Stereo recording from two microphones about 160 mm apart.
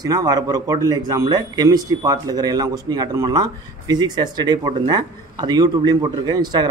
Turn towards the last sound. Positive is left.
turn(degrees=-25)  # may be behind; listen again after turning